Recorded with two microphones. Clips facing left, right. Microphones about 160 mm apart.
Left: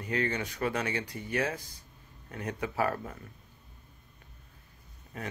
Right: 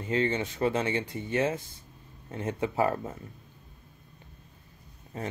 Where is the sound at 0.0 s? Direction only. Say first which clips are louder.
Right 4 dB; 25° right (ahead or behind).